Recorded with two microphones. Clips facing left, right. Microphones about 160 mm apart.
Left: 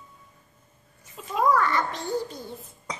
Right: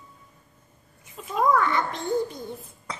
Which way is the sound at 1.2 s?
Centre (ahead or behind).